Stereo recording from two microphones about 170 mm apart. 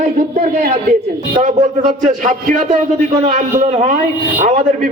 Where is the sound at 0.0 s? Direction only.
40° right (ahead or behind).